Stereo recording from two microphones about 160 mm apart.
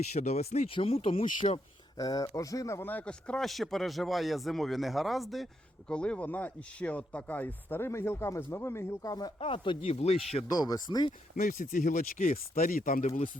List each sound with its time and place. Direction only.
0.1 s speech: 45° left (ahead or behind)
1.2 s speech: 50° left (ahead or behind)
1.5 s speech: 25° left (ahead or behind)
9.4 s speech: 35° left (ahead or behind)
10.5 s speech: 25° left (ahead or behind)
11.3 s speech: 60° left (ahead or behind)